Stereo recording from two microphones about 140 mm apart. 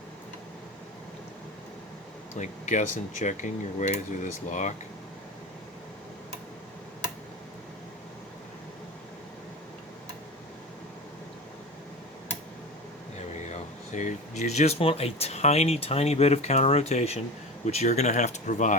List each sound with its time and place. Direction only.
2.4 s speech: 60° left (ahead or behind)
13.5 s speech: 55° left (ahead or behind)